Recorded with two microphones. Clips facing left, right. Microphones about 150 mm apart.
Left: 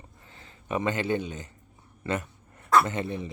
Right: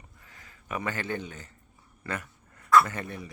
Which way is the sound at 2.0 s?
25° left (ahead or behind).